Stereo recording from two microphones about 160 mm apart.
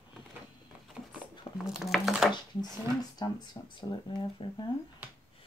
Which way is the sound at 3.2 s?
30° left (ahead or behind).